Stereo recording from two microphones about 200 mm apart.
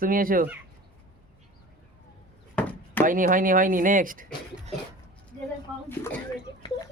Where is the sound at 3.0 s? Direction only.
40° right (ahead or behind).